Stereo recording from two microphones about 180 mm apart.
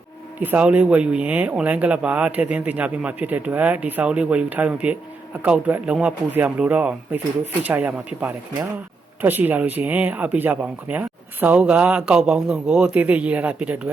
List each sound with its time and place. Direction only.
0.3 s speech: 10° right (ahead or behind)